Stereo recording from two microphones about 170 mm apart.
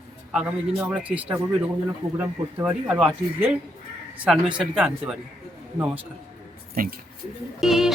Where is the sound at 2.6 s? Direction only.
10° right (ahead or behind).